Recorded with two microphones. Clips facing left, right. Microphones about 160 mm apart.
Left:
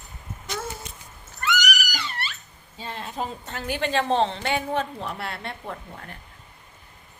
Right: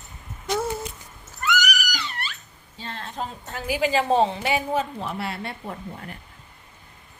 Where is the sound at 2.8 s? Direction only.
10° left (ahead or behind).